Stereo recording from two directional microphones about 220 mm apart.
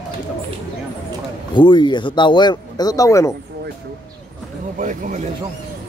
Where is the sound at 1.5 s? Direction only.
20° left (ahead or behind).